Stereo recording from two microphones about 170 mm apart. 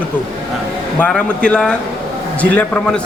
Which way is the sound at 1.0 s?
5° left (ahead or behind).